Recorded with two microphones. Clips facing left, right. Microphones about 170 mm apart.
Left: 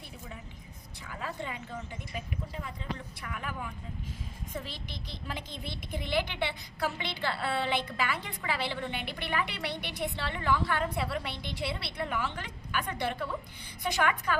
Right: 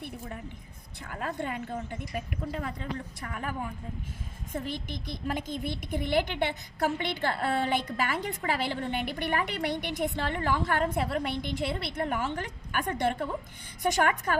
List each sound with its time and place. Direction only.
1.0 s a child's voice: 50° right (ahead or behind)
3.2 s a woman's voice: 40° right (ahead or behind)